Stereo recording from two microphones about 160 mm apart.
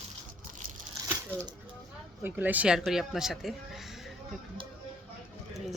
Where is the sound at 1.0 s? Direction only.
20° right (ahead or behind).